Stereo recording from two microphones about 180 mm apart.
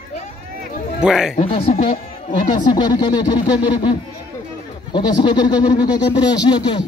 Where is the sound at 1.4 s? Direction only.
35° left (ahead or behind).